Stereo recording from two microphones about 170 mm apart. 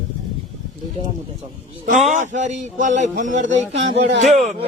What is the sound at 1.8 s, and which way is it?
Speech, 45° right (ahead or behind).